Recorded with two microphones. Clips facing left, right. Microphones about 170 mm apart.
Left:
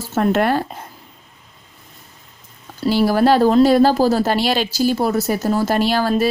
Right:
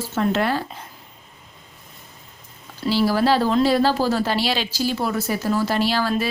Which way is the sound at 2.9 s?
50° left (ahead or behind).